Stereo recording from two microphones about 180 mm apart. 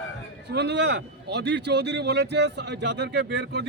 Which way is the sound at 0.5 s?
70° right (ahead or behind).